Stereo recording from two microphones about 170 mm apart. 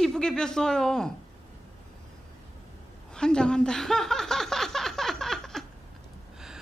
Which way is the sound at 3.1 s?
5° left (ahead or behind).